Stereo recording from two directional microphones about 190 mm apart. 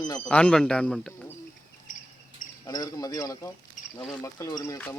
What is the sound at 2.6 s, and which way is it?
Speech, 20° left (ahead or behind).